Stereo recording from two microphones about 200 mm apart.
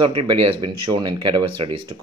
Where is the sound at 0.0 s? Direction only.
25° right (ahead or behind).